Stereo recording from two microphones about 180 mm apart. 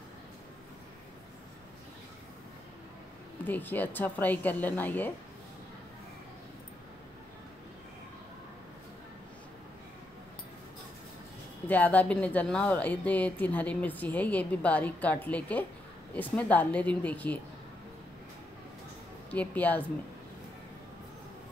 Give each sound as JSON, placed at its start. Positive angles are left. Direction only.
{"t": 3.4, "sound": "a woman's voice", "side_deg": 10}
{"t": 11.6, "sound": "a woman's voice", "side_deg": 10}
{"t": 19.3, "sound": "a woman's voice", "side_deg": 10}